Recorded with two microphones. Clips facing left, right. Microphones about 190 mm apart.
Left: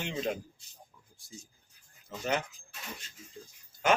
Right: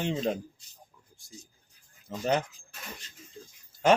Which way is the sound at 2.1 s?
35° right (ahead or behind).